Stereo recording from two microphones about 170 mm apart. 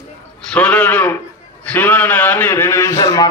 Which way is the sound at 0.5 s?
10° left (ahead or behind).